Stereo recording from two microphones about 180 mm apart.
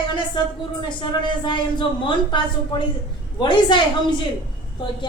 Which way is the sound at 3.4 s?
25° left (ahead or behind).